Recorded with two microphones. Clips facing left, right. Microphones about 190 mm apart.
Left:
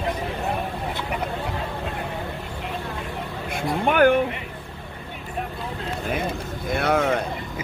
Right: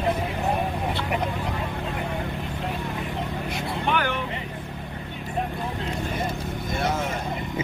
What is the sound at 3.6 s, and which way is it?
Vehicle, 50° left (ahead or behind).